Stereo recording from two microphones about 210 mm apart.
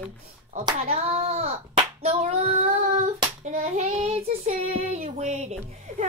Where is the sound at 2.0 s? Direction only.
30° right (ahead or behind).